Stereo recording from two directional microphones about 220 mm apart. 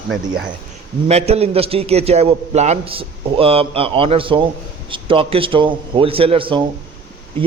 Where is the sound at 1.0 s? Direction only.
30° right (ahead or behind).